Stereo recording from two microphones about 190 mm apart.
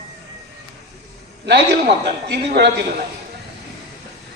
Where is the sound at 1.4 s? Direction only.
65° right (ahead or behind).